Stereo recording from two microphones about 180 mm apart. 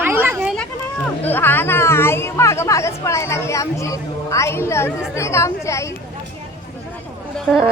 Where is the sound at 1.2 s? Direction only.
10° left (ahead or behind).